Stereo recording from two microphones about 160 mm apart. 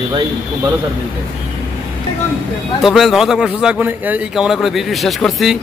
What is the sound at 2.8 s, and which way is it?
Speech, centre (ahead or behind).